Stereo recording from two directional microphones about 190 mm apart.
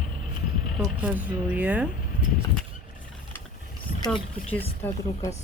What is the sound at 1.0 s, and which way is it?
Speech, 5° right (ahead or behind).